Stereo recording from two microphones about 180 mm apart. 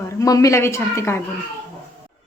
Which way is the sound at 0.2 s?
20° left (ahead or behind).